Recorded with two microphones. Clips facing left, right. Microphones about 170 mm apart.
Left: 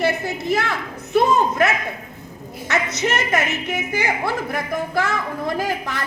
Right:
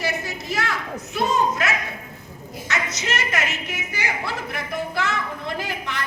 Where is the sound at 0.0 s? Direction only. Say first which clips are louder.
Left 6 dB; 55° left (ahead or behind).